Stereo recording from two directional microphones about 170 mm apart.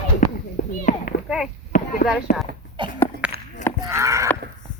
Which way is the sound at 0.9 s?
50° left (ahead or behind).